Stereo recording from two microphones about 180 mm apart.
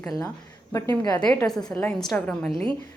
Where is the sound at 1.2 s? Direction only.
5° left (ahead or behind).